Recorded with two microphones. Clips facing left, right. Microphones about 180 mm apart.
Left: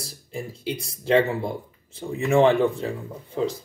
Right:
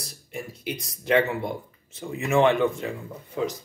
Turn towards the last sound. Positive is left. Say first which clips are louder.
# left 2 dB
turn(degrees=30)  # may be behind; listen again after turning